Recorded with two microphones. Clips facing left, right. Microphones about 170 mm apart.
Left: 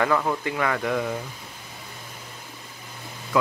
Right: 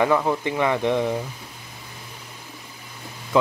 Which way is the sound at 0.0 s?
15° right (ahead or behind).